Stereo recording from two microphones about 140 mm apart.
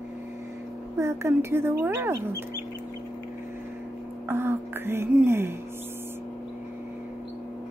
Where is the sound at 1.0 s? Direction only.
20° right (ahead or behind).